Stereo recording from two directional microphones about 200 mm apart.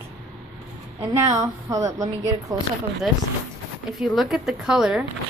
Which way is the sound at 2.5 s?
20° right (ahead or behind).